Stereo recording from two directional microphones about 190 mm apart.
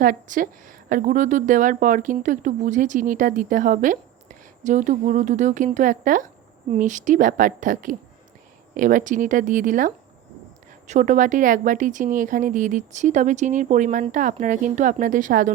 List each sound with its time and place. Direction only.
0.0 s a woman's voice: 45° right (ahead or behind)